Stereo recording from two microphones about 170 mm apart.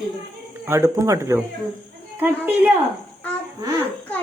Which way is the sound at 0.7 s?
15° right (ahead or behind).